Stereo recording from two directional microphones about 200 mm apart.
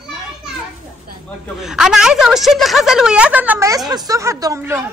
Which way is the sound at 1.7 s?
Centre (ahead or behind).